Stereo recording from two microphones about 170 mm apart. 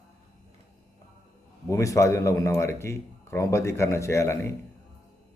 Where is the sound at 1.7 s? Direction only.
20° left (ahead or behind).